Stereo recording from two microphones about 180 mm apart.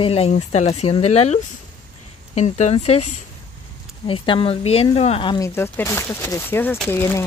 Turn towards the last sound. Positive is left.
turn(degrees=15)  # may be behind; listen again after turning